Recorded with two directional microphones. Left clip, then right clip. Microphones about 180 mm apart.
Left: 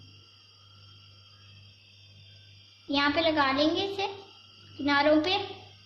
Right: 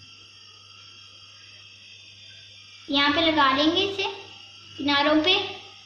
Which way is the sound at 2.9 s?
50° left (ahead or behind).